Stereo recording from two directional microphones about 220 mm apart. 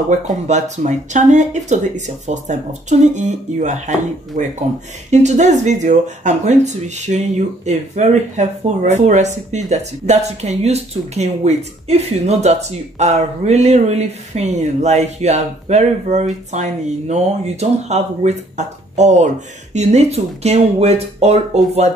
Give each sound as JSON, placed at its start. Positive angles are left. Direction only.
{"t": 0.5, "sound": "speech", "side_deg": -30}